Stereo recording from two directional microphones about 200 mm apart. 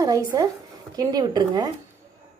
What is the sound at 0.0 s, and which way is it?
A woman's voice, 20° right (ahead or behind).